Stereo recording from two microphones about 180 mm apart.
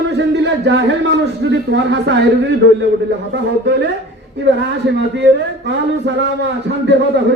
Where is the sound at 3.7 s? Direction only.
75° right (ahead or behind).